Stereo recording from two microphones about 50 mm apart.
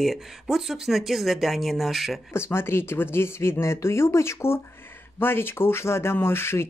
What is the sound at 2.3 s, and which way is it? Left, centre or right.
Speech, left.